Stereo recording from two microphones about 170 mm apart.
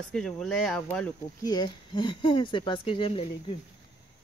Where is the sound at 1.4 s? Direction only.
25° left (ahead or behind).